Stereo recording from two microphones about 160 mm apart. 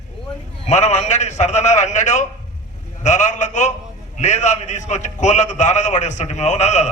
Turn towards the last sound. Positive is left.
turn(degrees=45)  # may be behind; listen again after turning